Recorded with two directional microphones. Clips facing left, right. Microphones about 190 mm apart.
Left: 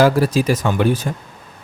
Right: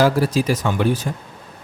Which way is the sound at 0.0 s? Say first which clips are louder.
Left 2 dB; 55° left (ahead or behind).